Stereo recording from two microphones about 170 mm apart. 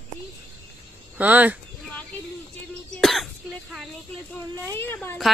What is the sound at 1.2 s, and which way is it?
Speech, 10° right (ahead or behind).